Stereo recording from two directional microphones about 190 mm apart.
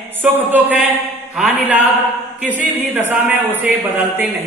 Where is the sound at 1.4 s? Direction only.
5° right (ahead or behind).